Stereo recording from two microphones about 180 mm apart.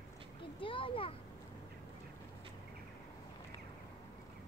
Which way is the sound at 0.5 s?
30° left (ahead or behind).